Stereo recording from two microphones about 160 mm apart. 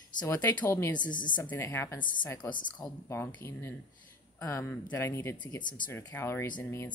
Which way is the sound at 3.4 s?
15° left (ahead or behind).